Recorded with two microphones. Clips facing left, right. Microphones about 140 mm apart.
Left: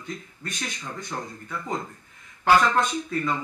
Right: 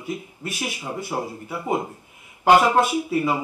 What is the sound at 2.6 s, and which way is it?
Speech, 10° right (ahead or behind).